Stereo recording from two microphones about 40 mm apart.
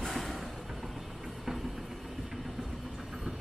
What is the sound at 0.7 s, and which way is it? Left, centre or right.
Music, centre.